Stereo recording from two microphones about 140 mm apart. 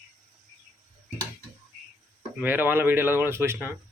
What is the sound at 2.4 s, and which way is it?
Speech, 15° right (ahead or behind).